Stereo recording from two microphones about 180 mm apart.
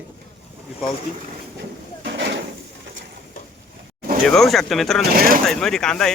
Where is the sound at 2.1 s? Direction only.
70° right (ahead or behind).